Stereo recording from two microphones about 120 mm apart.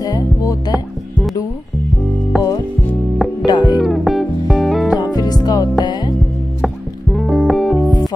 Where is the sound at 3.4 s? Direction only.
35° left (ahead or behind).